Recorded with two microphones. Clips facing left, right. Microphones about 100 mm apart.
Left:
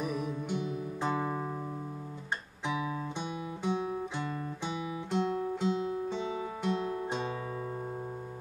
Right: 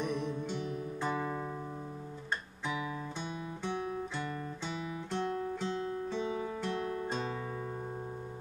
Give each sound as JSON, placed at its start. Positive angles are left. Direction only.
{"t": 0.0, "sound": "music", "side_deg": 5}
{"t": 3.2, "sound": "music", "side_deg": 15}
{"t": 4.3, "sound": "guitar", "side_deg": 15}